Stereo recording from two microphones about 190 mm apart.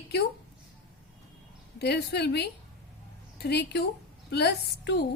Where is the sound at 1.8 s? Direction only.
60° left (ahead or behind).